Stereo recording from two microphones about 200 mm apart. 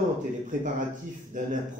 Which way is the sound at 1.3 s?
40° right (ahead or behind).